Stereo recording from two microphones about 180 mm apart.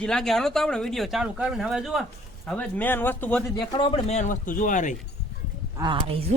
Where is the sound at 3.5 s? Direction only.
25° left (ahead or behind); by 5.0 s 45° left (ahead or behind).